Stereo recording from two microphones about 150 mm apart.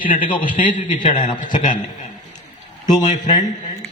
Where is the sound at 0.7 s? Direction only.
60° left (ahead or behind).